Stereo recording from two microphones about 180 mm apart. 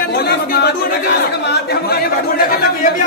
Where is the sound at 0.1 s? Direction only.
60° left (ahead or behind).